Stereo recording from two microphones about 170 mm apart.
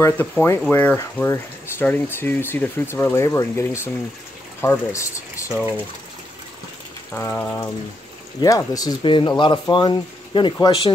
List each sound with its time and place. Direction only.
0.0 s speech: 15° left (ahead or behind)
7.2 s speech: 10° left (ahead or behind); by 10.9 s 30° left (ahead or behind)